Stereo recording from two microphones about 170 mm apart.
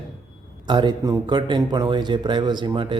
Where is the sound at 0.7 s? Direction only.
25° right (ahead or behind).